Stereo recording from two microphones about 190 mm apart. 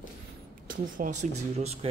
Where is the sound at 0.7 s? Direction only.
45° right (ahead or behind).